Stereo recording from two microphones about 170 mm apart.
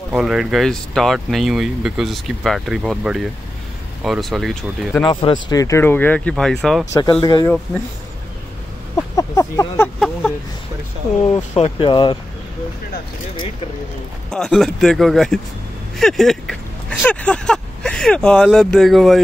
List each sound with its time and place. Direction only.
0.1 s speech: 5° right (ahead or behind)
5.0 s speech: 30° left (ahead or behind); by 6.9 s centre (ahead or behind)
6.9 s speech: 25° left (ahead or behind)
8.9 s a sound: 20° left (ahead or behind)
11.5 s speech: 30° left (ahead or behind)
14.3 s speech: centre (ahead or behind)